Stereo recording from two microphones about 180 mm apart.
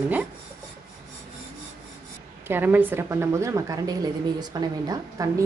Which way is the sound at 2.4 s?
10° right (ahead or behind).